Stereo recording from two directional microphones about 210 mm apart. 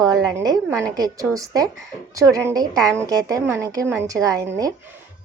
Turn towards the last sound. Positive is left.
turn(degrees=-15)  # may be behind; listen again after turning